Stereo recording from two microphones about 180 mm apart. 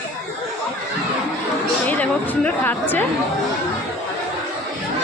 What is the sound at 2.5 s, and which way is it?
Speech, 10° left (ahead or behind).